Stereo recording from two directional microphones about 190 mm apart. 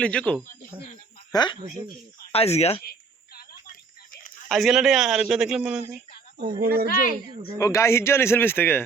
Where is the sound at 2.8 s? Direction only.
55° left (ahead or behind).